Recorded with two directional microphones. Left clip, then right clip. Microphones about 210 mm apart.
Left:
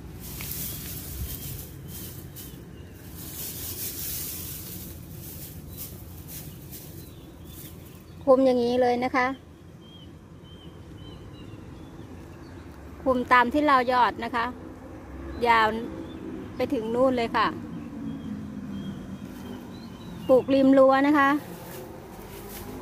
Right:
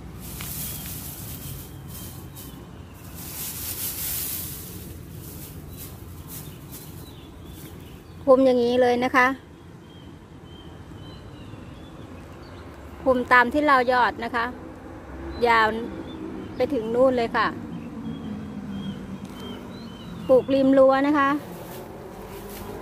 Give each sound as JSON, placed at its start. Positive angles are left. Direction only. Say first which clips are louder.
{"t": 8.3, "sound": "a woman's voice", "louder": "right 3 dB", "side_deg": 0}
{"t": 13.0, "sound": "a woman's voice", "louder": "right 3 dB", "side_deg": 10}
{"t": 20.2, "sound": "a woman's voice", "louder": "right 1 dB", "side_deg": 15}